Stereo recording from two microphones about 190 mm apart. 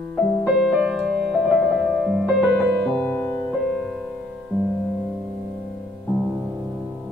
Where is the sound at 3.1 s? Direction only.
15° left (ahead or behind).